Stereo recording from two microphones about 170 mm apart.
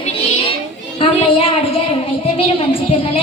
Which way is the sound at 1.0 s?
35° left (ahead or behind).